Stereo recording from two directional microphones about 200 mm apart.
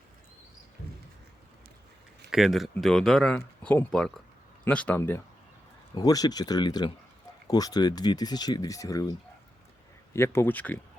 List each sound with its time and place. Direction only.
2.3 s speech: centre (ahead or behind)